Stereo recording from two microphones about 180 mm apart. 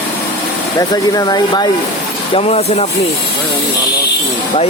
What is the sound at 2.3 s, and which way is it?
Speech, 35° left (ahead or behind).